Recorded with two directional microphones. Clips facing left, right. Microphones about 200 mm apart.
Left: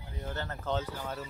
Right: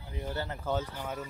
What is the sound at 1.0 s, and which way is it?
Speech, 10° right (ahead or behind).